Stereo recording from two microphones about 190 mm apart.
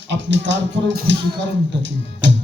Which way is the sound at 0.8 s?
70° right (ahead or behind).